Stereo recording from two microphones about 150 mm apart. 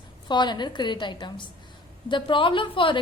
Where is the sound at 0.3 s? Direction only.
30° left (ahead or behind).